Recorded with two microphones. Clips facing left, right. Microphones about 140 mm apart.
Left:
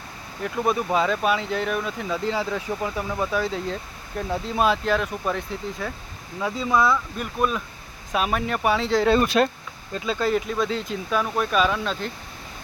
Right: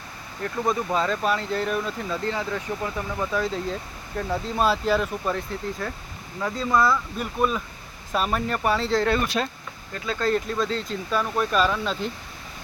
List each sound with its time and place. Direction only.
0.4 s speech: 15° left (ahead or behind)
3.3 s speech: centre (ahead or behind)
9.4 s speech: 65° left (ahead or behind)
9.9 s speech: 20° left (ahead or behind)
10.2 s speech: 5° left (ahead or behind)